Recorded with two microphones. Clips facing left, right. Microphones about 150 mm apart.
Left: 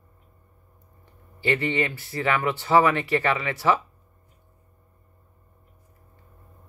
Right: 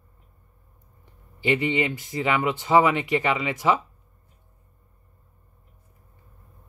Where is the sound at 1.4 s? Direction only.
15° right (ahead or behind).